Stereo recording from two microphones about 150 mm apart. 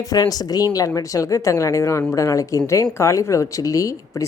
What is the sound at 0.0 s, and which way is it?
Speech, 25° left (ahead or behind).